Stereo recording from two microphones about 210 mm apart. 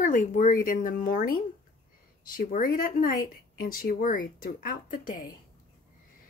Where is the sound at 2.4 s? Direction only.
40° left (ahead or behind).